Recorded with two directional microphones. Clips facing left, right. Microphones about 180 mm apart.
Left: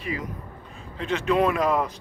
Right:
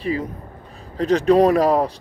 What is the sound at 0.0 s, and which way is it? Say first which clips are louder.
A man's voice: right 7 dB; 30° right (ahead or behind).